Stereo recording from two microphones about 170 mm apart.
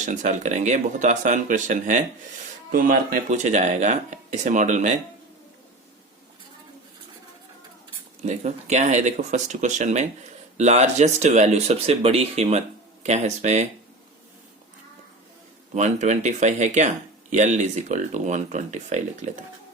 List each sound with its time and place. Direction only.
0.0 s speech: 45° right (ahead or behind)
8.2 s speech: 40° right (ahead or behind)
15.7 s speech: 45° right (ahead or behind)